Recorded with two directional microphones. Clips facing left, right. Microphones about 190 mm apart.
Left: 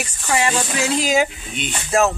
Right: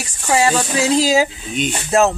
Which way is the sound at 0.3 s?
35° right (ahead or behind).